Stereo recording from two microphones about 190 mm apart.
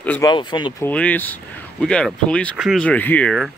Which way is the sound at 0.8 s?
10° left (ahead or behind).